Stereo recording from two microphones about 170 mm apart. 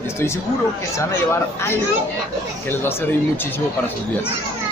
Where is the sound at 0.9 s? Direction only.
15° left (ahead or behind).